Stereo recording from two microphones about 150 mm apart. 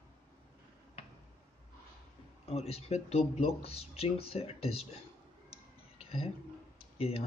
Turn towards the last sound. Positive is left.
turn(degrees=40)  # may be behind; listen again after turning